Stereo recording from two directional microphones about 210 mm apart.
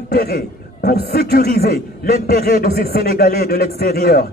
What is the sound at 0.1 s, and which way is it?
A man's voice, 50° left (ahead or behind).